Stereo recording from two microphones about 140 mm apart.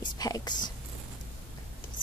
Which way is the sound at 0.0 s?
30° left (ahead or behind).